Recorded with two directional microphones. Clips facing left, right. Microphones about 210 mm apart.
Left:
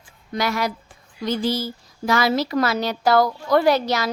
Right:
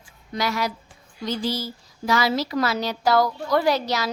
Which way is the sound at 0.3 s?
55° left (ahead or behind).